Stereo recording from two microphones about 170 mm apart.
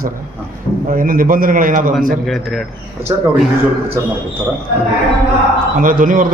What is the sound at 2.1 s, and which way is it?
Speech, centre (ahead or behind).